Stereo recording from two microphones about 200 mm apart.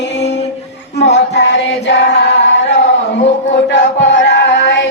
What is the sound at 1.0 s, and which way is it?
Child singing, 60° left (ahead or behind).